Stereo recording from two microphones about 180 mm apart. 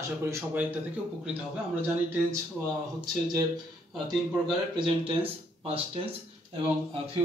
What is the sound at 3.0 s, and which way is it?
Speech, 20° right (ahead or behind).